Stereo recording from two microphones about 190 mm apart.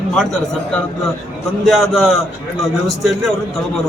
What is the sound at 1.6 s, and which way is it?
Speech, centre (ahead or behind).